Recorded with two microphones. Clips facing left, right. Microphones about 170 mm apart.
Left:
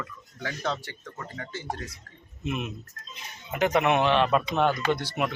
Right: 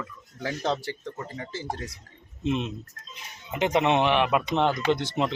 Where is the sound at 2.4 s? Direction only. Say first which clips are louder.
Right 4 dB; 25° right (ahead or behind).